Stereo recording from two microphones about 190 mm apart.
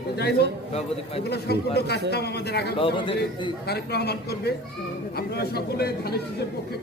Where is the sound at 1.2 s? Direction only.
60° left (ahead or behind).